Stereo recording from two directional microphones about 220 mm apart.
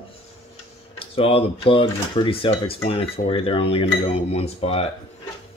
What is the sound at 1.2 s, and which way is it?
Cutlery, 25° left (ahead or behind).